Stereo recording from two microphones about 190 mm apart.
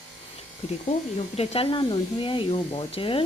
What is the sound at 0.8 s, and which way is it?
Speech, 30° left (ahead or behind).